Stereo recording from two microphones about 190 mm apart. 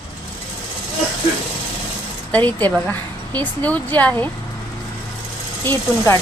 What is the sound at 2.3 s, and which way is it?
Speech, 10° left (ahead or behind).